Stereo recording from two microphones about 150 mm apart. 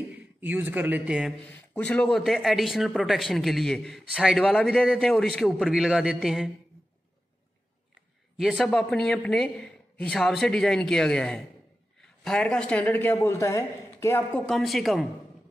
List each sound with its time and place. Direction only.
0.4 s speech: 10° right (ahead or behind)
1.4 s a man's voice: 10° left (ahead or behind)
8.4 s a man's voice: centre (ahead or behind)